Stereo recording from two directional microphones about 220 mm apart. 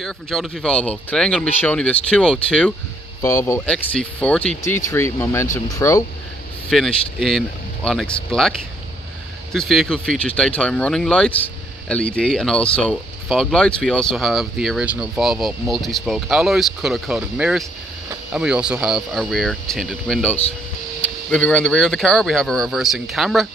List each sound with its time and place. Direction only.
0.0 s speech: centre (ahead or behind)
6.7 s speech: centre (ahead or behind)